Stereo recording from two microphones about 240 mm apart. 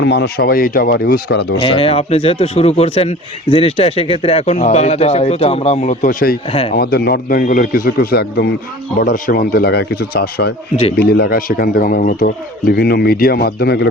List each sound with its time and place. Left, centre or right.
0.0 s a man's voice: left
1.6 s speech: left
6.5 s speech: left
6.7 s a man's voice: left